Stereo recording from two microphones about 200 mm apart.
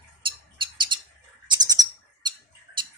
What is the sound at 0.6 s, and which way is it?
Bird, 25° right (ahead or behind).